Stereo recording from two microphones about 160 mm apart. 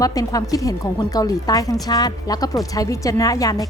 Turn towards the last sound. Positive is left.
turn(degrees=20)  # may be behind; listen again after turning